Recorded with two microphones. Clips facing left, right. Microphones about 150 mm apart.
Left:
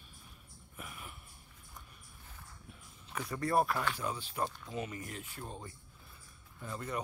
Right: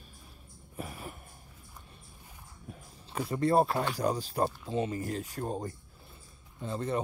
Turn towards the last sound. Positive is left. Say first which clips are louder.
# right 7 dB
turn(degrees=-30)  # may be behind; listen again after turning